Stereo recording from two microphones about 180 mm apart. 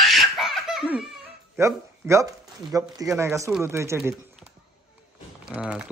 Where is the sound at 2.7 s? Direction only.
20° right (ahead or behind).